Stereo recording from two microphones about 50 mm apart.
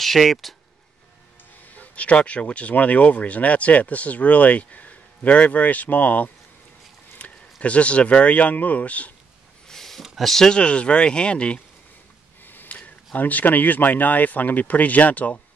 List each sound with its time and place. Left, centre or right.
0.0 s speech: centre
1.7 s speech: left
7.2 s a sound: left
7.6 s speech: left
9.7 s a sound: centre
10.5 s speech: left
12.4 s speech: left